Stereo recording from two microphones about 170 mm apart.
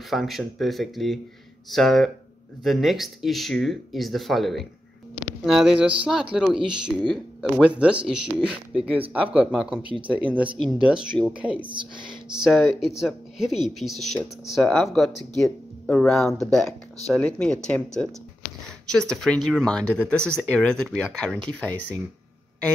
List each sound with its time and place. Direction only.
0.1 s speech: centre (ahead or behind)
6.6 s a woman's voice: 25° right (ahead or behind)
7.4 s speech: 5° right (ahead or behind)
11.6 s a woman's voice: 30° right (ahead or behind)
12.4 s speech: centre (ahead or behind)